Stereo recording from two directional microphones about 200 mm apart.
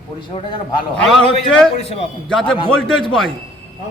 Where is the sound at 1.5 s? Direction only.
5° left (ahead or behind).